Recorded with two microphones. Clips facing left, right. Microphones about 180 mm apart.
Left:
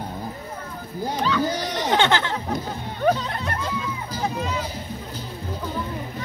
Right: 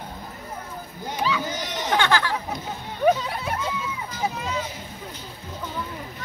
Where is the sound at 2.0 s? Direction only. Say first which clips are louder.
Left 1 dB; 25° left (ahead or behind).